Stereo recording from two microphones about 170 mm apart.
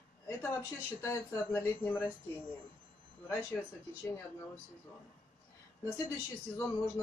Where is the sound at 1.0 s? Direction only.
15° left (ahead or behind).